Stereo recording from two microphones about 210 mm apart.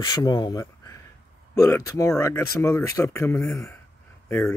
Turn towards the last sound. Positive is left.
turn(degrees=10)  # may be behind; listen again after turning